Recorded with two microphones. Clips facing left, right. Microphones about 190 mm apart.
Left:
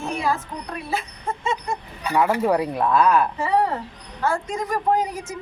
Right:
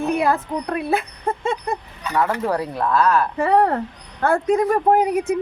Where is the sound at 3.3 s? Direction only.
60° right (ahead or behind).